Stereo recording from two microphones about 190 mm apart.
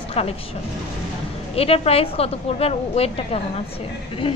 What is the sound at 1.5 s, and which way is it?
Speech, 30° left (ahead or behind).